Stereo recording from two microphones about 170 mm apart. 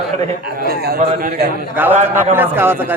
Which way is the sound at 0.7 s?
70° right (ahead or behind).